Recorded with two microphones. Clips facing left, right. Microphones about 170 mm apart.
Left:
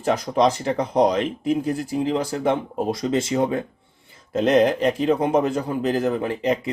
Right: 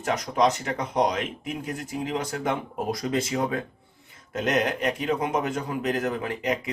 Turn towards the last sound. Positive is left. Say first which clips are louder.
# left 5 dB
turn(degrees=30)  # may be behind; listen again after turning